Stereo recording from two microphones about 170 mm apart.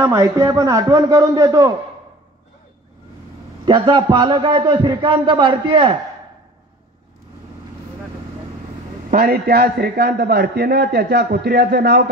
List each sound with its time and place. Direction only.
0.0 s a man's voice: 20° right (ahead or behind)
3.6 s a man's voice: 25° right (ahead or behind)
9.1 s a man's voice: 65° right (ahead or behind)